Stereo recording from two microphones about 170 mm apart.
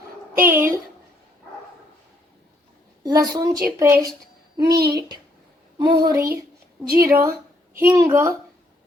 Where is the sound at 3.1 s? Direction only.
20° right (ahead or behind).